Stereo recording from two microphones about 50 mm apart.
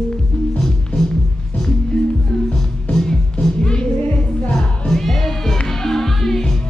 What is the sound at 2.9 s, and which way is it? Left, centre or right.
Music, centre.